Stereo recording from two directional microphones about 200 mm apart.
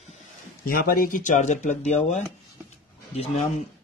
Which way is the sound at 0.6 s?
45° left (ahead or behind).